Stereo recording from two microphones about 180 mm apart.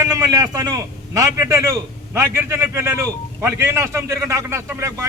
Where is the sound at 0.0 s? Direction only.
15° right (ahead or behind).